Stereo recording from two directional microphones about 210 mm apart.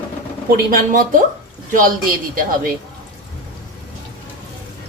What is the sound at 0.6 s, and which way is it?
A woman's voice, 40° right (ahead or behind).